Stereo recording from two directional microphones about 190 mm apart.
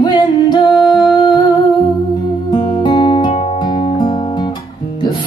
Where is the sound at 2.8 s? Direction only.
25° left (ahead or behind).